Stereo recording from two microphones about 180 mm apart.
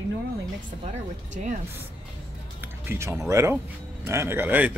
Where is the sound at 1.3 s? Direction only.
45° right (ahead or behind).